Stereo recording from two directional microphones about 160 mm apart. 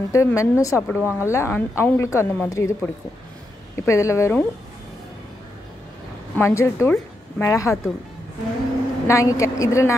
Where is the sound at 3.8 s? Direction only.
20° left (ahead or behind).